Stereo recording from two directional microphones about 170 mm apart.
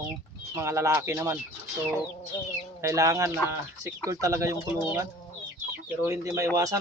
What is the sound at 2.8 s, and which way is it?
Speech, 20° right (ahead or behind).